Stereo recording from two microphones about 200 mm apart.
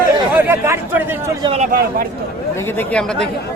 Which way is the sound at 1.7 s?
45° right (ahead or behind).